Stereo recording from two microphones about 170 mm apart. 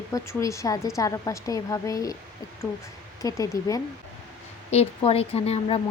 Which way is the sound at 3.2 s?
20° left (ahead or behind).